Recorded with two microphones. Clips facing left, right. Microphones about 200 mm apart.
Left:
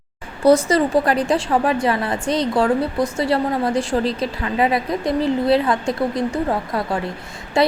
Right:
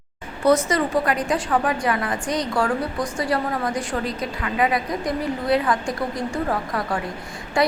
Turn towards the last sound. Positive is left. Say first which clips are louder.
# left 3 dB
turn(degrees=25)  # may be behind; listen again after turning